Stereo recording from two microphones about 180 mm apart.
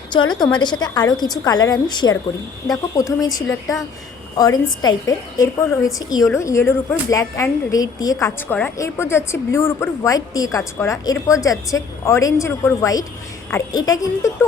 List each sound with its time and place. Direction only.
0.1 s a woman's voice: 25° left (ahead or behind)